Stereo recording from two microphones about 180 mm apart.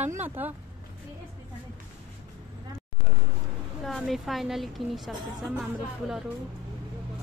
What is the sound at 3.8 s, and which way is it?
A woman's voice, centre (ahead or behind).